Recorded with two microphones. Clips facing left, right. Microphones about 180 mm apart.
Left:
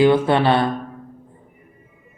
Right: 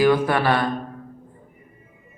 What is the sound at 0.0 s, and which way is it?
Speech, 25° left (ahead or behind).